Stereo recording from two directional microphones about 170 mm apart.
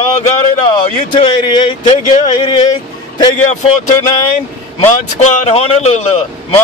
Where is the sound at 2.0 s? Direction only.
40° left (ahead or behind).